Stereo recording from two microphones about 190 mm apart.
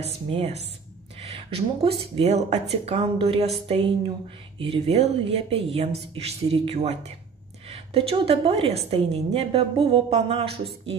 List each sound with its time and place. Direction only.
0.0 s a woman's voice: 30° right (ahead or behind)